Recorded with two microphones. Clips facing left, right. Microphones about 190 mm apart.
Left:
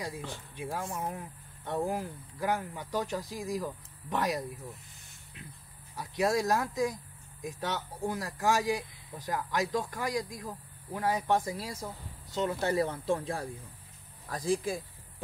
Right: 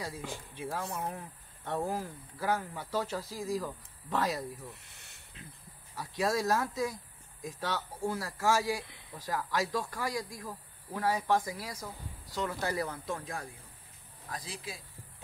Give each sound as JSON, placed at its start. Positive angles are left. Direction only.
{"t": 0.6, "sound": "speech", "side_deg": 15}
{"t": 5.9, "sound": "speech", "side_deg": 15}
{"t": 14.3, "sound": "speech", "side_deg": 45}